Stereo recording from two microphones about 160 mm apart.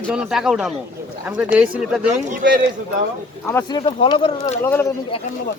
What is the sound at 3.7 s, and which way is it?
Speech, 30° left (ahead or behind).